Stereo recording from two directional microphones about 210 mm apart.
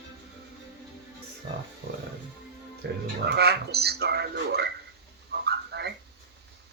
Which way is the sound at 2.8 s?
50° right (ahead or behind).